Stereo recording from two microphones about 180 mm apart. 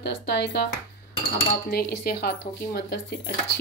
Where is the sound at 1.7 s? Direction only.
60° left (ahead or behind).